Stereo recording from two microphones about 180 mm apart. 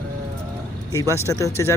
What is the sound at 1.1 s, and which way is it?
Speech, 15° left (ahead or behind).